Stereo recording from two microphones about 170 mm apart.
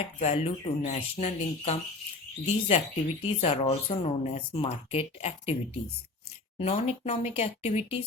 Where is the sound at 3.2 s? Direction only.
40° left (ahead or behind).